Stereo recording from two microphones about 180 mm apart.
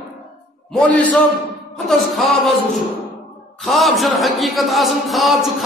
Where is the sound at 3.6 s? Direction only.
Centre (ahead or behind).